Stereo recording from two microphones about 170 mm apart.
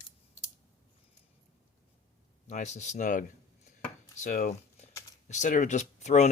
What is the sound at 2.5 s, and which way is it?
Speech, 45° left (ahead or behind).